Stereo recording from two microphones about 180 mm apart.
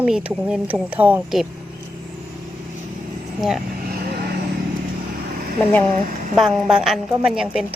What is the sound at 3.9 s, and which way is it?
Vehicle, 60° right (ahead or behind).